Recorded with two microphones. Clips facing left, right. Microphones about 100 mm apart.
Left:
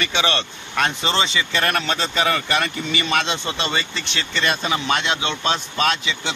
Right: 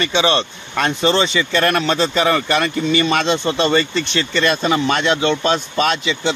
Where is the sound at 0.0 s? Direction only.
30° right (ahead or behind).